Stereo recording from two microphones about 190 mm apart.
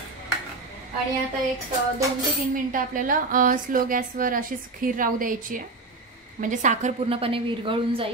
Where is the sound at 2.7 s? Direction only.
45° right (ahead or behind); by 8.1 s 30° right (ahead or behind).